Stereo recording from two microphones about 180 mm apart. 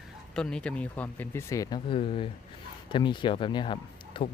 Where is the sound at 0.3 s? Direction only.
5° left (ahead or behind).